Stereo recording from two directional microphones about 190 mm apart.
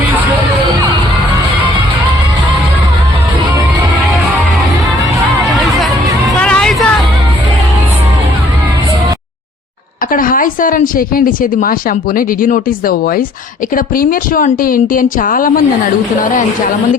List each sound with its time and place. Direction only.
6.4 s music: 5° left (ahead or behind)
10.1 s speech: 45° left (ahead or behind)